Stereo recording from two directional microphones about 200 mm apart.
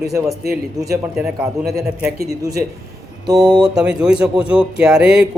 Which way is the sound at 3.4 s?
5° right (ahead or behind).